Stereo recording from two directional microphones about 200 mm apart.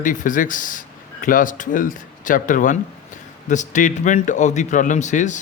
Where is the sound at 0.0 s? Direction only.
40° left (ahead or behind).